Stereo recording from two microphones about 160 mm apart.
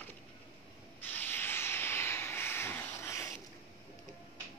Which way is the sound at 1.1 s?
15° left (ahead or behind).